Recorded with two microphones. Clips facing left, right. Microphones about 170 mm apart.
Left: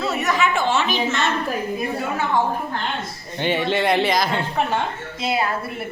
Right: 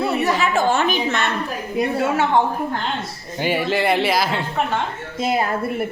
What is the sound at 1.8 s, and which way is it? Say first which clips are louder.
Speech: right 5 dB; 75° right (ahead or behind).